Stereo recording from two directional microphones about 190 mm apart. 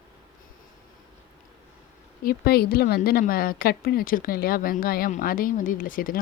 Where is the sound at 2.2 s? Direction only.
55° left (ahead or behind).